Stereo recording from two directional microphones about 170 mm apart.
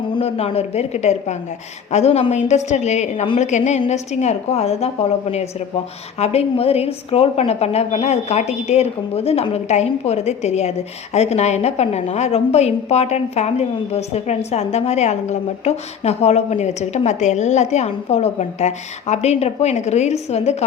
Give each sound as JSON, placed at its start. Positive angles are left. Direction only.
{"t": 0.1, "sound": "a woman's voice", "side_deg": 35}